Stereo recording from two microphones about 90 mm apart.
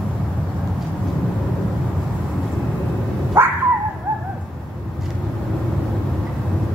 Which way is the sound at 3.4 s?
25° right (ahead or behind).